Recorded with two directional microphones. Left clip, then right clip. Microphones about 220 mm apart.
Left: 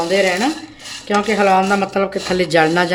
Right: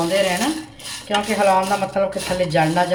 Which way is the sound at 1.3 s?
55° left (ahead or behind).